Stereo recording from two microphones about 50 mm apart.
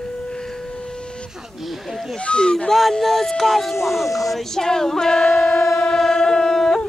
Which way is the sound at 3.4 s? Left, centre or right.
Centre.